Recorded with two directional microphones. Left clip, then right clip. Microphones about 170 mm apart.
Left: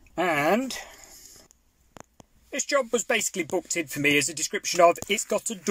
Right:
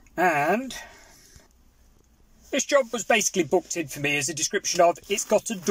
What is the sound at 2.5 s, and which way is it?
Speech, 10° left (ahead or behind).